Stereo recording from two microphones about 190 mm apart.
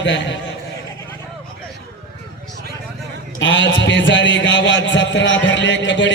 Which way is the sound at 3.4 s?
75° left (ahead or behind).